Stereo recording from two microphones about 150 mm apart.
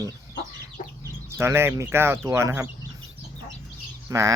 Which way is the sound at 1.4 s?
15° right (ahead or behind).